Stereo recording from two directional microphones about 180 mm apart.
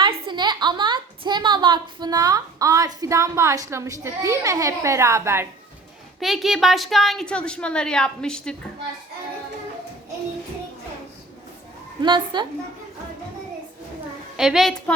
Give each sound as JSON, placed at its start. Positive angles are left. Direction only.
{"t": 0.0, "sound": "a woman's voice", "side_deg": -25}
{"t": 6.1, "sound": "a woman's voice", "side_deg": 0}
{"t": 12.0, "sound": "a woman's voice", "side_deg": -25}
{"t": 14.3, "sound": "a woman's voice", "side_deg": 0}